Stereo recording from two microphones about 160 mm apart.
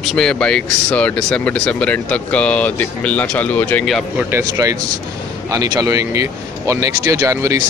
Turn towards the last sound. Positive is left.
turn(degrees=-20)  # may be behind; listen again after turning